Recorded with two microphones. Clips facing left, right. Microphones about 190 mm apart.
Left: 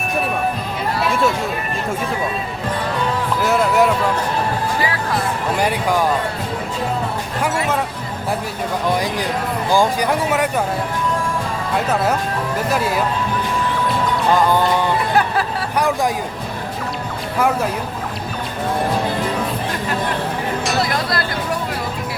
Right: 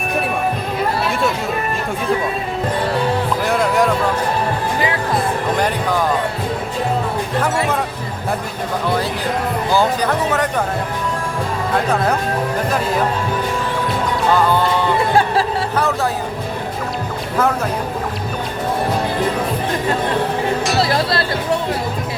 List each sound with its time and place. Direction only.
3.4 s music: 5° left (ahead or behind)
5.5 s speech: 10° left (ahead or behind)
9.7 s speech: 10° left (ahead or behind)
14.3 s speech: 15° left (ahead or behind)
20.8 s music: 30° right (ahead or behind)